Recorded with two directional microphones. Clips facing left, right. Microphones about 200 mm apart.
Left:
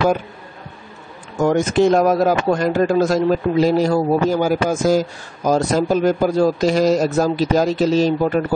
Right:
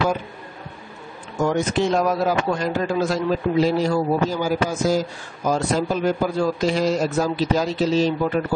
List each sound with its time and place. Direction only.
1.5 s a man's voice: 45° left (ahead or behind)